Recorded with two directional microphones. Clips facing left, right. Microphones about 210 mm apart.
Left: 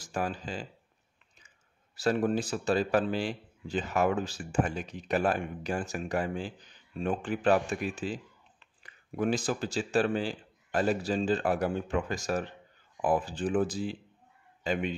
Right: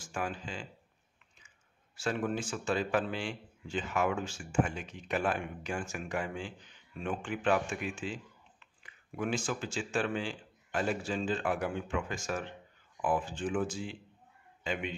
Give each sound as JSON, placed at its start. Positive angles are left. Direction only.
{"t": 0.0, "sound": "speech", "side_deg": 35}
{"t": 2.0, "sound": "a man's voice", "side_deg": 35}